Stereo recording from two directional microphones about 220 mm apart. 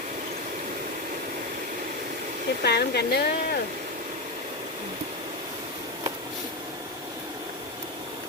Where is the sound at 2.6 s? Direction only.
45° left (ahead or behind).